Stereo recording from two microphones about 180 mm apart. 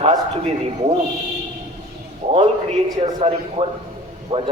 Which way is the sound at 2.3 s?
35° right (ahead or behind).